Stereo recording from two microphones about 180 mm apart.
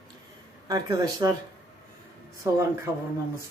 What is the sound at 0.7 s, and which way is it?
Speech, 20° right (ahead or behind).